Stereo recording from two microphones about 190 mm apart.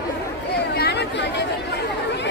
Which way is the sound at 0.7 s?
60° left (ahead or behind).